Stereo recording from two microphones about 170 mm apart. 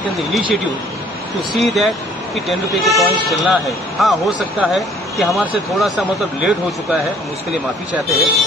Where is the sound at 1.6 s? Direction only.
Centre (ahead or behind).